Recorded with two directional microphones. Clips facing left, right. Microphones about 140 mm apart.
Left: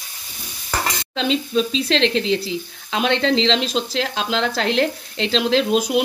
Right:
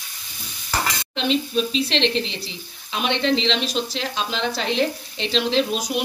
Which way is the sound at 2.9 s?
90° left.